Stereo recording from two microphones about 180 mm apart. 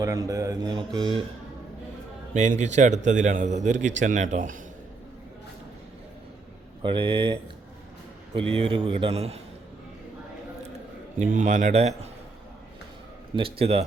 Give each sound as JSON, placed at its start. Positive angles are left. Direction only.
{"t": 0.0, "sound": "speech", "side_deg": -20}
{"t": 2.3, "sound": "a man's voice", "side_deg": -40}
{"t": 6.8, "sound": "speech", "side_deg": -25}
{"t": 8.4, "sound": "a man's voice", "side_deg": -30}
{"t": 11.2, "sound": "a man's voice", "side_deg": -45}
{"t": 13.3, "sound": "a man's voice", "side_deg": -30}